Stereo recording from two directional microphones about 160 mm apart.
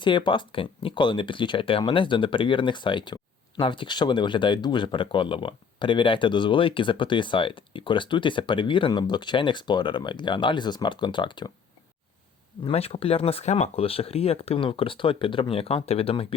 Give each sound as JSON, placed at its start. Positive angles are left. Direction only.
{"t": 0.0, "sound": "speech", "side_deg": 30}
{"t": 12.6, "sound": "speech", "side_deg": 35}